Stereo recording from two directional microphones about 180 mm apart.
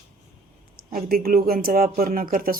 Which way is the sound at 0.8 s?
55° right (ahead or behind).